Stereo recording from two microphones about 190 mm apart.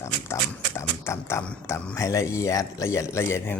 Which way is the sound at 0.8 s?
15° left (ahead or behind).